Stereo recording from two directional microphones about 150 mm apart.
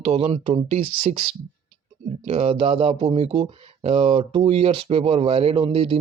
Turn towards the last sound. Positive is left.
turn(degrees=-40)  # may be behind; listen again after turning